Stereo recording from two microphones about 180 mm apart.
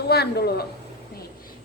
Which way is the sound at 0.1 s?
65° left (ahead or behind).